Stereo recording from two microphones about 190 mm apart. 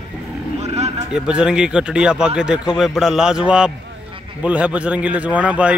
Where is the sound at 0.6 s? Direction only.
35° right (ahead or behind).